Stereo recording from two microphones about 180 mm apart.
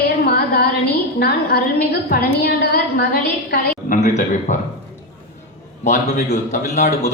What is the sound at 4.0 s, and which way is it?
Speech, 40° left (ahead or behind).